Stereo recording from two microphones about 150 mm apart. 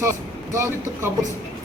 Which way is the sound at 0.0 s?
20° right (ahead or behind).